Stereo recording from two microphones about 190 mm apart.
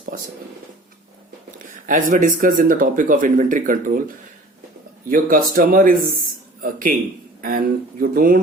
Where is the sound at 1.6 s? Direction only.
45° right (ahead or behind).